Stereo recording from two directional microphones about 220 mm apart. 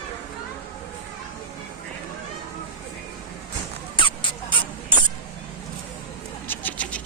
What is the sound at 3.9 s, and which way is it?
Rodents, 20° left (ahead or behind).